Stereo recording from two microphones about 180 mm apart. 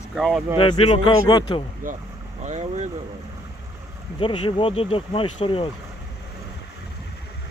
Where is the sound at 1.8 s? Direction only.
50° right (ahead or behind).